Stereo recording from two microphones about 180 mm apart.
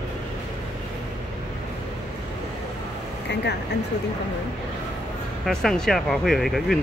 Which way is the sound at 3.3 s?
70° left (ahead or behind).